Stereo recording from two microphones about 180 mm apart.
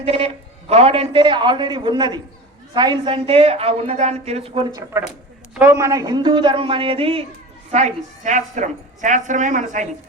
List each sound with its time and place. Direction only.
0.0 s a man's voice: 35° right (ahead or behind)
5.5 s a man's voice: 15° right (ahead or behind); by 9.9 s 45° right (ahead or behind)